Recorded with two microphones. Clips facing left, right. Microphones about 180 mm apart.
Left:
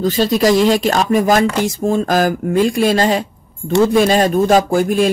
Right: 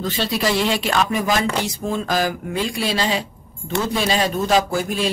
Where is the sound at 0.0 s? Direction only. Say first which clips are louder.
Left 8 dB; 40° left (ahead or behind).